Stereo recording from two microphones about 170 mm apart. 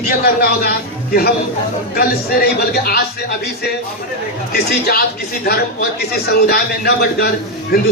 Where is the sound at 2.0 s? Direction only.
60° left (ahead or behind).